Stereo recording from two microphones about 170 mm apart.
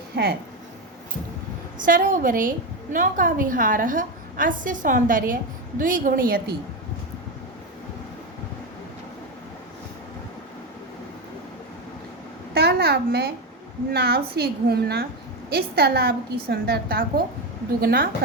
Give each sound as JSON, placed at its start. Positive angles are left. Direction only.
{"t": 0.1, "sound": "a woman's voice", "side_deg": -75}
{"t": 1.8, "sound": "a woman's voice", "side_deg": -50}
{"t": 12.5, "sound": "babbling", "side_deg": -70}
{"t": 13.9, "sound": "a woman's voice", "side_deg": -70}